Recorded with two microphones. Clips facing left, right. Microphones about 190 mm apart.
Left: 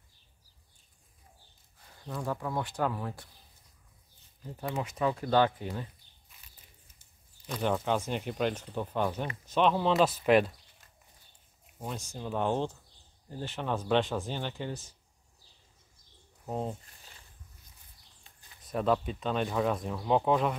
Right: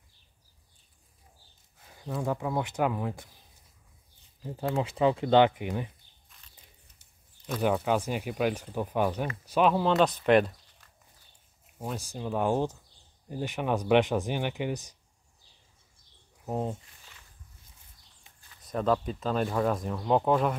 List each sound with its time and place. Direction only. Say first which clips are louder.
2.2 s speech: right 3 dB; 15° right (ahead or behind)
4.8 s speech: right 5 dB; 25° right (ahead or behind)
6.2 s a sound: even; 5° left (ahead or behind)
7.4 s speech: right 3 dB; 5° right (ahead or behind)
11.6 s a sound: right 3 dB; centre (ahead or behind)
12.1 s speech: right 3 dB; 5° right (ahead or behind)
16.4 s speech: right 3 dB; 5° right (ahead or behind)
18.3 s a sound: right 1 dB; 20° right (ahead or behind)
18.6 s speech: right 1 dB; centre (ahead or behind)